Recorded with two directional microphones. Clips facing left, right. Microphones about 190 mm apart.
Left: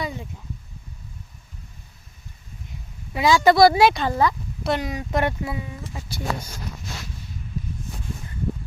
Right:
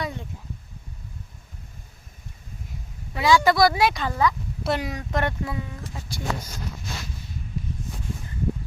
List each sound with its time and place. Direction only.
0.0 s a sound: 5° left (ahead or behind)
3.1 s speech: 20° left (ahead or behind)
4.6 s speech: 5° right (ahead or behind)
5.1 s speech: 10° left (ahead or behind)